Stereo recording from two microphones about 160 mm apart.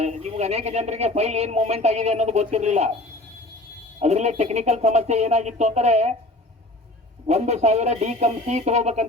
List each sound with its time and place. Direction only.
0.0 s speech: 40° right (ahead or behind)
4.0 s speech: 45° right (ahead or behind)
7.3 s speech: 45° right (ahead or behind)